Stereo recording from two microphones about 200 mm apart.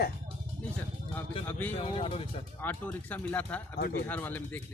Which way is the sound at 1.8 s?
25° left (ahead or behind).